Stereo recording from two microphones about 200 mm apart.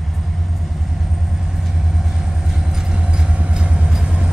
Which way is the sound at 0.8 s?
Centre (ahead or behind).